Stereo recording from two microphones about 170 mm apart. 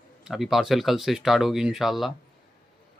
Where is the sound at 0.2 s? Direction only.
Centre (ahead or behind).